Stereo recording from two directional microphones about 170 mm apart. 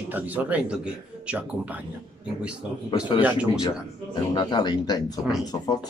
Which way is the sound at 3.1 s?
10° right (ahead or behind).